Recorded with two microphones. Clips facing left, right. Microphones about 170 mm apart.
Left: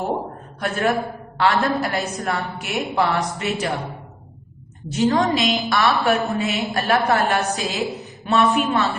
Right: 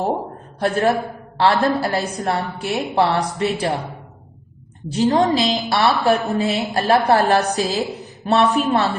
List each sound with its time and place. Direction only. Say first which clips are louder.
0.6 s a woman's voice: right 3 dB; 35° right (ahead or behind)
4.9 s a woman's voice: right 2 dB; 30° right (ahead or behind)